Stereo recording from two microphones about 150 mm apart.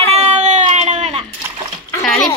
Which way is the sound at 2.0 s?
5° left (ahead or behind).